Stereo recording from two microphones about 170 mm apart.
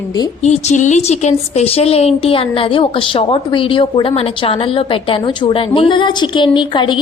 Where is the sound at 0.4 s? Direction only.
40° left (ahead or behind).